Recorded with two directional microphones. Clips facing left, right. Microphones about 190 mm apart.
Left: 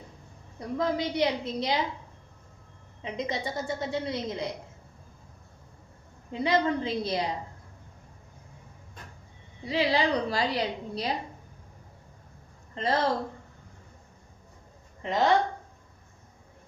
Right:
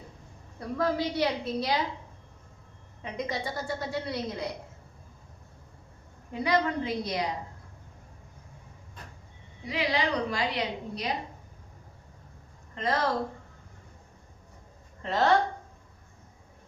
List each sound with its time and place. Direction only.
0.8 s a woman's voice: 20° left (ahead or behind)
3.0 s a woman's voice: 20° left (ahead or behind)
6.3 s a woman's voice: 25° left (ahead or behind)
9.6 s a woman's voice: 30° left (ahead or behind)
12.7 s a woman's voice: 30° left (ahead or behind)
15.0 s a woman's voice: 15° left (ahead or behind)